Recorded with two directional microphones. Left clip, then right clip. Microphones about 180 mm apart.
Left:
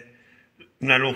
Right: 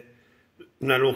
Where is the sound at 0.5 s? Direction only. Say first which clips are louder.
Left 3 dB; 25° right (ahead or behind).